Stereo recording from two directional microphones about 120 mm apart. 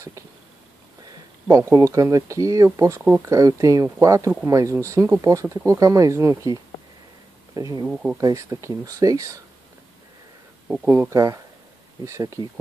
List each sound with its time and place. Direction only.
1.5 s speech: 25° right (ahead or behind)
7.8 s speech: 5° right (ahead or behind)
8.2 s speech: 30° right (ahead or behind)
10.7 s speech: 20° right (ahead or behind)